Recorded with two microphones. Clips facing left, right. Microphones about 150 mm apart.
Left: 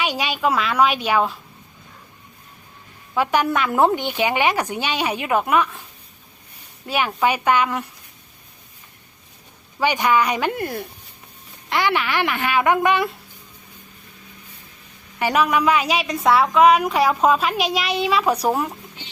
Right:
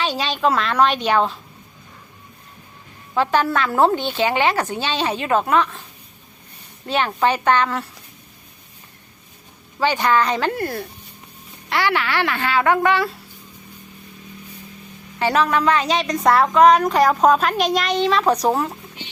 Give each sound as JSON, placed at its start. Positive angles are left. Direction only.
{"t": 0.0, "sound": "a woman's voice", "side_deg": 10}
{"t": 3.2, "sound": "a woman's voice", "side_deg": 15}
{"t": 6.8, "sound": "a woman's voice", "side_deg": 10}
{"t": 9.8, "sound": "a woman's voice", "side_deg": 15}
{"t": 15.2, "sound": "a woman's voice", "side_deg": 15}